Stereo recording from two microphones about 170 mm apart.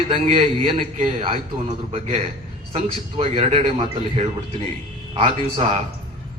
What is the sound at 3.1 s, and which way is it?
Speech, 30° right (ahead or behind).